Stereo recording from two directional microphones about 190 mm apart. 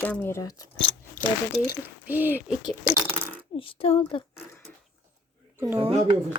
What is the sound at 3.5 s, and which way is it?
Speech, 30° left (ahead or behind).